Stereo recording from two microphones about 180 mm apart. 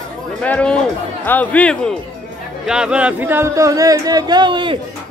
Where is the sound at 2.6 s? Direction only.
5° right (ahead or behind).